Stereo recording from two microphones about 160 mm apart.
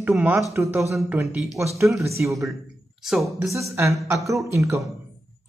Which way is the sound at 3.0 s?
Centre (ahead or behind).